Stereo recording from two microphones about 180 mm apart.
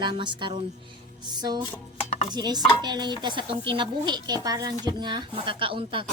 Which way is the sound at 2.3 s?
25° right (ahead or behind).